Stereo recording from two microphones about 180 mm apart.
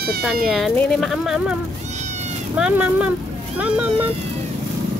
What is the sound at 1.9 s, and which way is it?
Cat, 40° right (ahead or behind).